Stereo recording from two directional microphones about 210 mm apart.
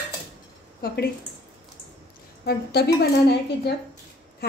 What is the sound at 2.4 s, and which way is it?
Speech, 50° left (ahead or behind).